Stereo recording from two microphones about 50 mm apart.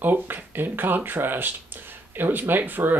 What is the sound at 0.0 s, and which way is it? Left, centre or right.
Speech, right.